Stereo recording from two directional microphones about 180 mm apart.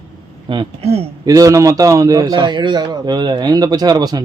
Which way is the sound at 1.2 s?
20° right (ahead or behind).